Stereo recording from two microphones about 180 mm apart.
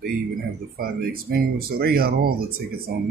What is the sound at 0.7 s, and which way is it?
Speech, 55° right (ahead or behind).